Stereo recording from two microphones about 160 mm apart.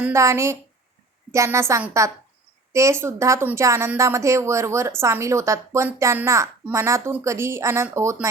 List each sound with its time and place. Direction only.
0.0 s a woman's voice: 20° right (ahead or behind)